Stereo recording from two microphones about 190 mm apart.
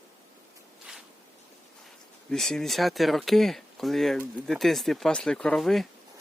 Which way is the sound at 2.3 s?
Centre (ahead or behind).